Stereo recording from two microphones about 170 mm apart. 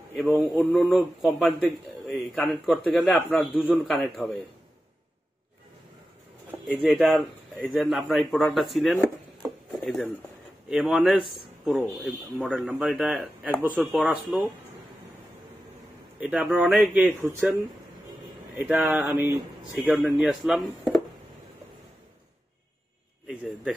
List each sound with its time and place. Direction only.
0.3 s a man's voice: centre (ahead or behind)
3.2 s a man's voice: 10° left (ahead or behind)
6.7 s a man's voice: 5° right (ahead or behind)
9.4 s a sound: centre (ahead or behind)
10.7 s a man's voice: 5° right (ahead or behind)
16.2 s a man's voice: 10° right (ahead or behind)
18.6 s a man's voice: 5° right (ahead or behind)
23.2 s a sound: centre (ahead or behind)